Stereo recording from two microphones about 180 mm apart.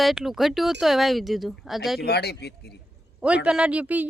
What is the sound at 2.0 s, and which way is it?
Speech, 65° left (ahead or behind).